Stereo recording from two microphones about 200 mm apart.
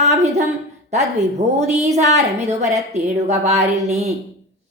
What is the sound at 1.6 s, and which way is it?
A woman's voice, 35° right (ahead or behind).